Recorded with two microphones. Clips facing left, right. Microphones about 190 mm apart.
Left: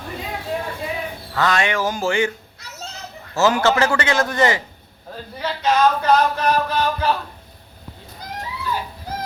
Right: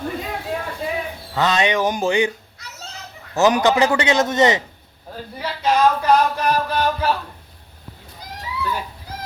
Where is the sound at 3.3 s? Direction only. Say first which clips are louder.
Right 1 dB; 15° right (ahead or behind).